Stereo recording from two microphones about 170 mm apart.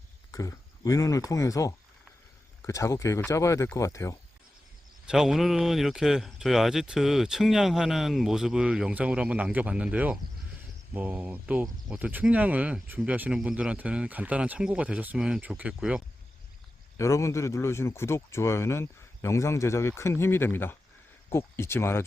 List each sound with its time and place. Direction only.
0.3 s speech: 20° left (ahead or behind)
5.0 s speech: 5° right (ahead or behind)
17.0 s speech: 15° left (ahead or behind)